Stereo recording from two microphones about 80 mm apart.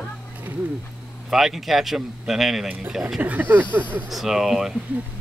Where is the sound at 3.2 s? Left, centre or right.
Right.